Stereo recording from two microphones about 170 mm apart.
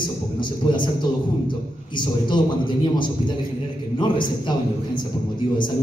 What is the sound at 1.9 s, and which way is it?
A man's voice, 30° left (ahead or behind).